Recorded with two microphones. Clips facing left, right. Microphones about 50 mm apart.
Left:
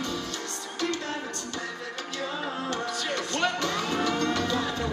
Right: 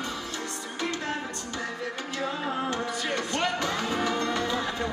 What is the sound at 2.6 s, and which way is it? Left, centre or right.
Music, centre.